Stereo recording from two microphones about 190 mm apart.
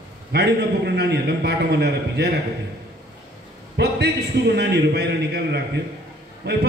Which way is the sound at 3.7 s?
60° right (ahead or behind).